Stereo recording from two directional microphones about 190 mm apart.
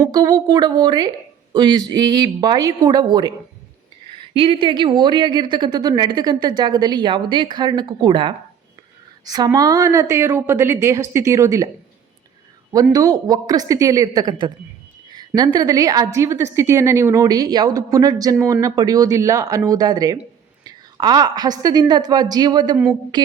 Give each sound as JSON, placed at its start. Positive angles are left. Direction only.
{"t": 0.1, "sound": "a woman's voice", "side_deg": -20}
{"t": 4.4, "sound": "a woman's voice", "side_deg": -25}
{"t": 12.9, "sound": "a woman's voice", "side_deg": -20}